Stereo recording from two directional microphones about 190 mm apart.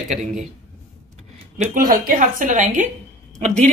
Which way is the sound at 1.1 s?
40° right (ahead or behind).